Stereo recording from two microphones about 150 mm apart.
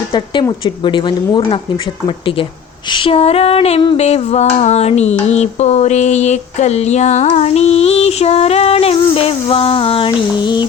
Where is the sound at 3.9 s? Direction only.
45° left (ahead or behind); by 10.7 s 30° left (ahead or behind).